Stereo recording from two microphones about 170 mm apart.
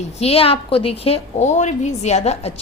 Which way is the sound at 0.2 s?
35° left (ahead or behind).